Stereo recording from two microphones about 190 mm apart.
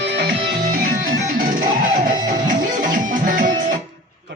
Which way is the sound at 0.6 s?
45° right (ahead or behind).